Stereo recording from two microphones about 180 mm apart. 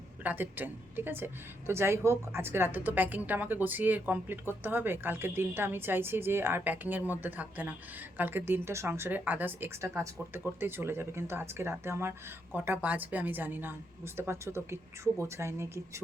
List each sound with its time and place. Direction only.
0.2 s a woman's voice: 10° right (ahead or behind)